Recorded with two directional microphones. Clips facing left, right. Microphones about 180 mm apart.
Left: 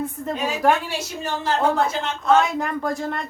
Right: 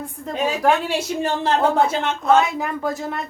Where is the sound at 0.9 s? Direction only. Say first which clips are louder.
Right 6 dB; 60° right (ahead or behind).